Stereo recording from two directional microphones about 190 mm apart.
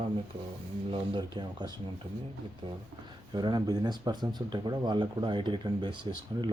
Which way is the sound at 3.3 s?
20° right (ahead or behind).